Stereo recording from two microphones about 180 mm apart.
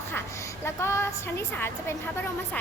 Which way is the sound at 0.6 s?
15° left (ahead or behind).